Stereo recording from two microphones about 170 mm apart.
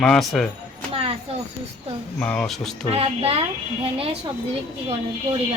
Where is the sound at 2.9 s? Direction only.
35° right (ahead or behind).